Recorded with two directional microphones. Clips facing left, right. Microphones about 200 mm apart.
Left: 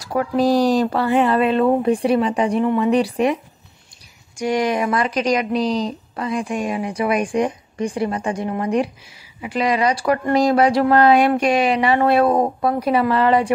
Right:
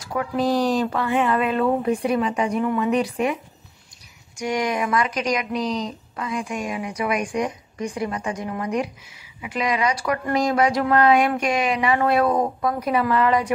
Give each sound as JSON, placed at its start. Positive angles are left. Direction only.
{"t": 0.0, "sound": "speech", "side_deg": 35}
{"t": 4.4, "sound": "speech", "side_deg": 30}